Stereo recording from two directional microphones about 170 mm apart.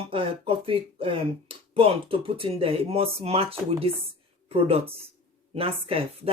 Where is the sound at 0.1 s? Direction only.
30° right (ahead or behind).